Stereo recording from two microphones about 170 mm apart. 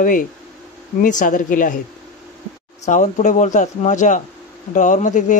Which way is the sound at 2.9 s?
45° left (ahead or behind).